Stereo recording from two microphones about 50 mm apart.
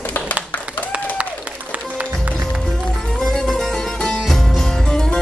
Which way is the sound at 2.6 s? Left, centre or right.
Centre.